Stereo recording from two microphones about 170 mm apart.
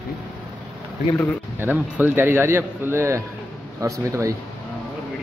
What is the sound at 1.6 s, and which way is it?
A man's voice, 10° right (ahead or behind).